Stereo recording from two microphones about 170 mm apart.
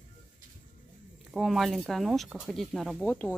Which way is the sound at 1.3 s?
Centre (ahead or behind).